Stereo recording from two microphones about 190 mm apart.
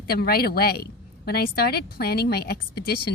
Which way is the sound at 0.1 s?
55° left (ahead or behind).